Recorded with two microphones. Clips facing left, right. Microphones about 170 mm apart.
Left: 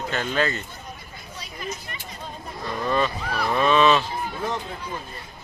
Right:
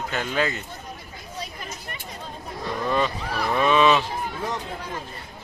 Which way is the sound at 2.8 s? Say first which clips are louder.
Left 1 dB; 15° right (ahead or behind).